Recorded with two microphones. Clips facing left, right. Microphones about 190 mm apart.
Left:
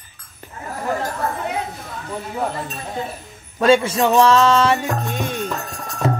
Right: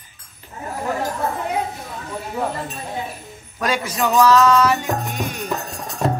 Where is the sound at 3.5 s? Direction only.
25° left (ahead or behind).